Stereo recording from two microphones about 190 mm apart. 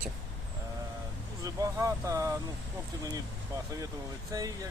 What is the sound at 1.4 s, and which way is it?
Speech, 20° right (ahead or behind).